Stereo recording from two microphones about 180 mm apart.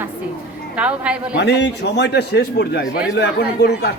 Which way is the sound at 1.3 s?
75° left (ahead or behind).